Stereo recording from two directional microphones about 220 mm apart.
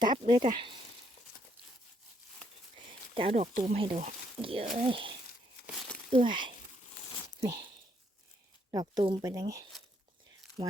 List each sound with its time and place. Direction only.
0.0 s speech: 20° right (ahead or behind)
2.7 s a sound: 25° right (ahead or behind)
3.7 s speech: 25° right (ahead or behind)
8.7 s speech: 20° right (ahead or behind)